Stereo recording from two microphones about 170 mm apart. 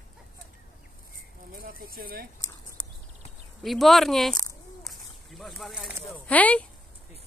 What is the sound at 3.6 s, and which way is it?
Speech, centre (ahead or behind).